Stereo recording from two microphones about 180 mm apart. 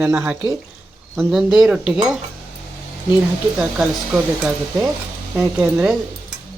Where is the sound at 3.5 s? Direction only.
5° right (ahead or behind).